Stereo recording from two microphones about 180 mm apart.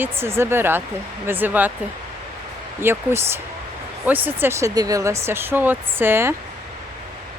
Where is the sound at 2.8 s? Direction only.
15° right (ahead or behind).